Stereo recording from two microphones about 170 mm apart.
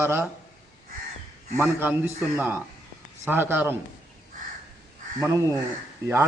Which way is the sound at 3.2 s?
10° right (ahead or behind).